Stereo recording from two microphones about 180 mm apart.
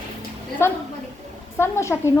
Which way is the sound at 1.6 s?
15° left (ahead or behind).